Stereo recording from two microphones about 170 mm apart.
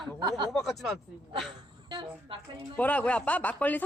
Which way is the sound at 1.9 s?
30° right (ahead or behind).